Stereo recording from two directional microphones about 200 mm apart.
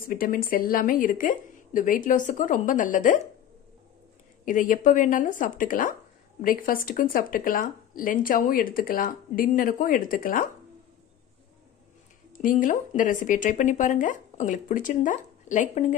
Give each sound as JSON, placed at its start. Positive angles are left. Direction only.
{"t": 0.1, "sound": "speech", "side_deg": 45}
{"t": 4.5, "sound": "speech", "side_deg": 40}
{"t": 12.4, "sound": "speech", "side_deg": 40}